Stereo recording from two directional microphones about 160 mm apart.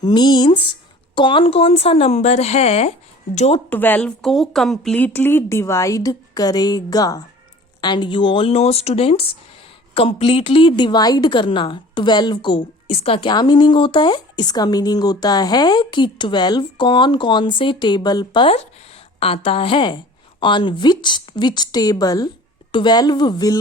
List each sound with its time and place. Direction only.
0.0 s a woman's voice: 25° left (ahead or behind); by 3.6 s 45° left (ahead or behind)
3.7 s a woman's voice: 10° left (ahead or behind)